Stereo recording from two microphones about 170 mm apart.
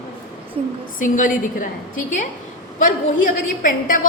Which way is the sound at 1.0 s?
50° left (ahead or behind).